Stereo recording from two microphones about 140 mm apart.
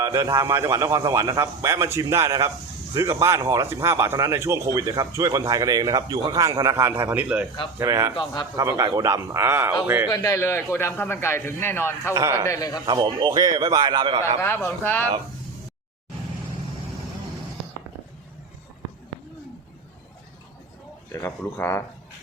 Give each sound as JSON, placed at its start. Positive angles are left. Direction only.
{"t": 0.0, "sound": "speech", "side_deg": -20}
{"t": 7.8, "sound": "speech", "side_deg": -20}
{"t": 8.1, "sound": "a man's voice", "side_deg": 30}
{"t": 8.5, "sound": "a man's voice", "side_deg": -20}
{"t": 10.1, "sound": "a man's voice", "side_deg": 20}
{"t": 12.1, "sound": "speech", "side_deg": -20}
{"t": 12.5, "sound": "a man's voice", "side_deg": 25}
{"t": 12.8, "sound": "a man's voice", "side_deg": -35}
{"t": 14.4, "sound": "a man's voice", "side_deg": 15}
{"t": 21.1, "sound": "a man's voice", "side_deg": 20}